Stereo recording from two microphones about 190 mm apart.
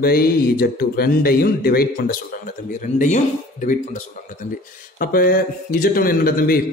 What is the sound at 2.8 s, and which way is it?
Speech, 40° left (ahead or behind).